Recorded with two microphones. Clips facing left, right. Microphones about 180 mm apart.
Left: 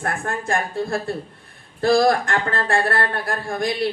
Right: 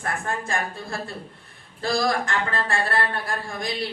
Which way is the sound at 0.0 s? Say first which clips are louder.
Left 3 dB; 55° left (ahead or behind).